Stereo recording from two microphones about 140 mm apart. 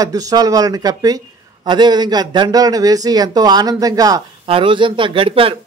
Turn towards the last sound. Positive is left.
turn(degrees=-40)  # may be behind; listen again after turning